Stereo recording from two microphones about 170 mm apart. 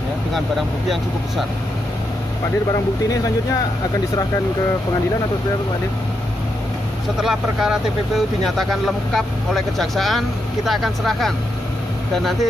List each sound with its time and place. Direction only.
0.3 s speech: centre (ahead or behind)
7.2 s speech: 5° right (ahead or behind)